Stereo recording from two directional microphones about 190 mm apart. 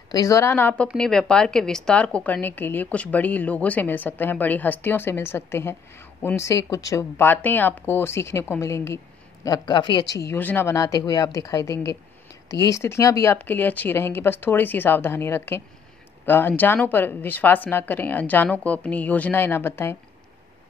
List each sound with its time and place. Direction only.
0.1 s a woman's voice: 20° left (ahead or behind)